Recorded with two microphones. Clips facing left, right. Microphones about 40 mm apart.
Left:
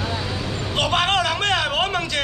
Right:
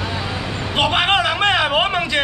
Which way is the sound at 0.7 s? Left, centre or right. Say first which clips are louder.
Right 3 dB; centre.